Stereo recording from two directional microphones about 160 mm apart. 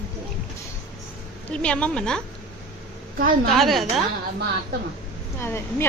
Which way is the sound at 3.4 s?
Centre (ahead or behind).